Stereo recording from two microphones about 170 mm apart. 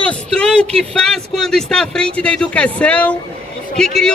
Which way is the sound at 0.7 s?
5° left (ahead or behind).